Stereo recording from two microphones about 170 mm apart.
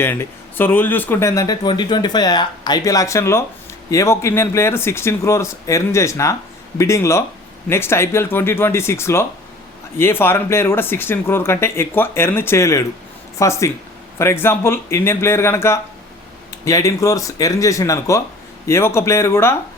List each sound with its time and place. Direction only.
0.0 s speech: 15° left (ahead or behind)